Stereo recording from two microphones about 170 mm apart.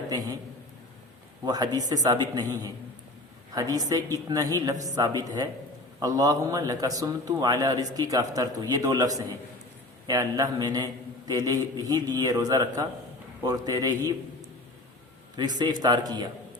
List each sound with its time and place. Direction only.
1.5 s a man's voice: 25° right (ahead or behind)
15.5 s a man's voice: 25° right (ahead or behind)